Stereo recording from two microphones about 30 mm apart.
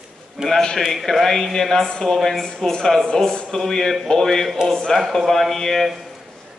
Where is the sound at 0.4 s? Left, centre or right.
Right.